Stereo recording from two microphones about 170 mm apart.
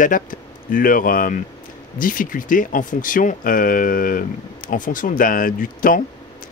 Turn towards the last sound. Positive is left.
turn(degrees=55)  # may be behind; listen again after turning